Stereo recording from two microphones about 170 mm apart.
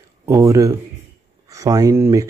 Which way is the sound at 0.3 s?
15° right (ahead or behind).